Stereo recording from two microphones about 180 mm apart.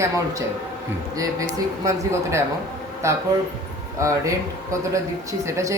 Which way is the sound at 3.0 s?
15° right (ahead or behind).